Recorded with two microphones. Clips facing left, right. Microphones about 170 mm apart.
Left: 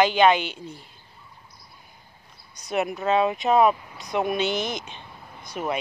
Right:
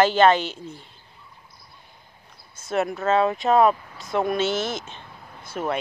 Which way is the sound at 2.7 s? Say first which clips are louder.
Right 1 dB; 15° left (ahead or behind).